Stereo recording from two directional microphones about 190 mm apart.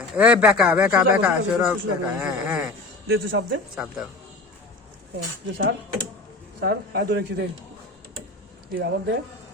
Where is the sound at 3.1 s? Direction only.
90° right.